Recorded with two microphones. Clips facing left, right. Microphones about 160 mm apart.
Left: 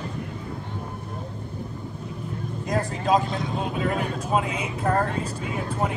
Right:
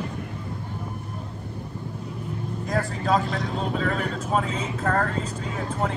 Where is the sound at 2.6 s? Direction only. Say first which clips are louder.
Left 1 dB; 20° left (ahead or behind).